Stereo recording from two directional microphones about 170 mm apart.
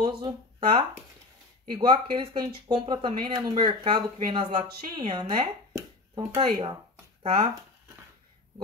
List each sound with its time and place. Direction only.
0.0 s speech: 30° right (ahead or behind)